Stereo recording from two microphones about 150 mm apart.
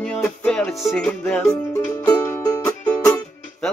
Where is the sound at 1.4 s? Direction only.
20° left (ahead or behind).